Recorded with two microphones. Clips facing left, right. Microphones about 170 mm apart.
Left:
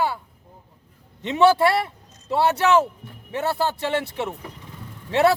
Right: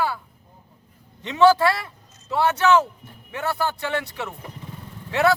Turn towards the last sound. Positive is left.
turn(degrees=25)  # may be behind; listen again after turning